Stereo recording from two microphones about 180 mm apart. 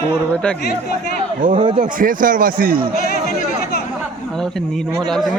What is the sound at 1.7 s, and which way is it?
Speech, 50° right (ahead or behind).